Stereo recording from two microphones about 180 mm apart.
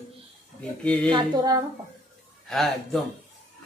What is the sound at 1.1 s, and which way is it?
Speech, 20° right (ahead or behind).